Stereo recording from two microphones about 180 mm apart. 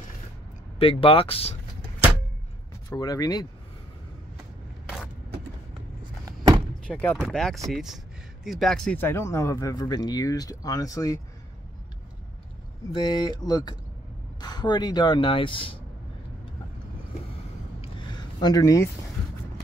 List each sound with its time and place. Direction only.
0.7 s speech: 30° left (ahead or behind)
2.9 s speech: 20° left (ahead or behind)
6.2 s a sound: 20° right (ahead or behind)
6.9 s speech: 10° left (ahead or behind)
12.9 s speech: 25° left (ahead or behind)
17.8 s a sound: 25° left (ahead or behind)